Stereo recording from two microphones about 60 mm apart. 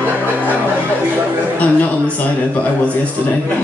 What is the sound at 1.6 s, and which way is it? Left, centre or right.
A man's voice, left.